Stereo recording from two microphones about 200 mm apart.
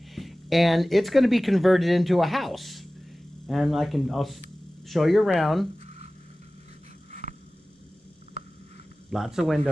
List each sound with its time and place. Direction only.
0.1 s speech: centre (ahead or behind)
7.1 s a sound: 40° right (ahead or behind)
9.1 s speech: centre (ahead or behind)